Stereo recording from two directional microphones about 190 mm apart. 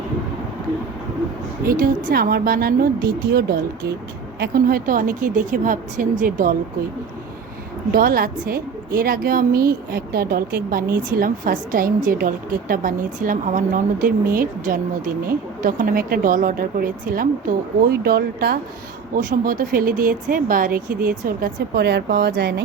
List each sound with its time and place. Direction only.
1.6 s speech: 45° right (ahead or behind)
7.9 s speech: 50° right (ahead or behind)
17.8 s speech: 55° right (ahead or behind)